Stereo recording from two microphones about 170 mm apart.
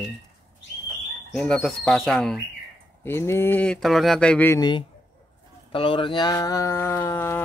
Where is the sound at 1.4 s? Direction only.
5° left (ahead or behind).